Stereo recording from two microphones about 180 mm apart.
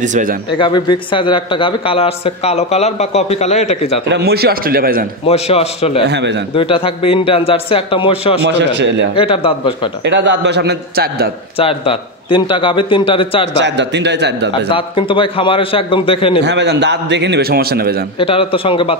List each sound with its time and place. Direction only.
0.0 s speech: 45° right (ahead or behind)
0.6 s a man's voice: 25° left (ahead or behind)
4.1 s a man's voice: 60° right (ahead or behind)
5.2 s a man's voice: 35° left (ahead or behind)
6.0 s a man's voice: 70° right (ahead or behind)
6.5 s a man's voice: 30° left (ahead or behind)
8.5 s a man's voice: 75° right (ahead or behind)
9.1 s a man's voice: 30° left (ahead or behind)
10.0 s a man's voice: 80° right; by 11.2 s 60° right (ahead or behind)
11.5 s a man's voice: 30° left (ahead or behind)
13.6 s a man's voice: 75° right (ahead or behind)
14.5 s a man's voice: 30° left (ahead or behind)
16.4 s a man's voice: 75° right (ahead or behind); by 18.0 s 60° right (ahead or behind)
18.2 s a man's voice: 30° left (ahead or behind)